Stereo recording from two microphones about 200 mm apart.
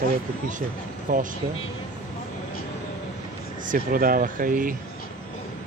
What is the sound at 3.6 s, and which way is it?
Speech, 45° right (ahead or behind).